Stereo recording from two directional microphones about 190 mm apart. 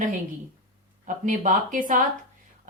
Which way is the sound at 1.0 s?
40° right (ahead or behind).